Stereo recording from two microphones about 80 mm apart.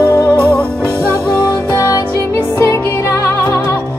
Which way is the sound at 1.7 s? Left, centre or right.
Left.